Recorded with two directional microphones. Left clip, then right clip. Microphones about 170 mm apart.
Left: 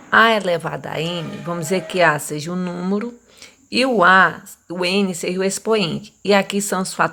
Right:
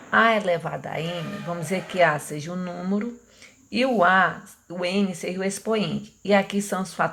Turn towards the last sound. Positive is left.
turn(degrees=35)  # may be behind; listen again after turning